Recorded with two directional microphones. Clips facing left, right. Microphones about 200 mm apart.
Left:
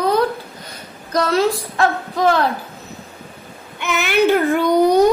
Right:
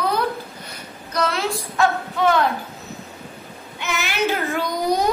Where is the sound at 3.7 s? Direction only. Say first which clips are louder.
Left 7 dB; 55° left (ahead or behind).